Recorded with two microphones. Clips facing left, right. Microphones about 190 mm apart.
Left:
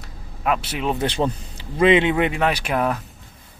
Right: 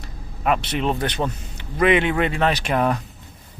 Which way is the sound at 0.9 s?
25° left (ahead or behind).